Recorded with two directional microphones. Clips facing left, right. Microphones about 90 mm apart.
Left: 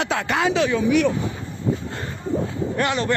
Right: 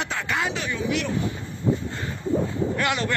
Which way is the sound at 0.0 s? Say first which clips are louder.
Left 5 dB; 80° left.